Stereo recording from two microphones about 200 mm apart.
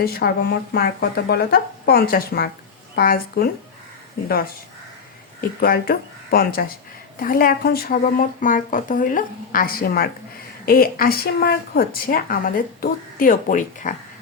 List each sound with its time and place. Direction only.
0.0 s speech: 55° left (ahead or behind)
5.4 s speech: 50° left (ahead or behind)